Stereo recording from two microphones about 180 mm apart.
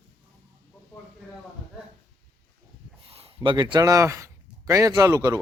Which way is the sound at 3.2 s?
30° right (ahead or behind).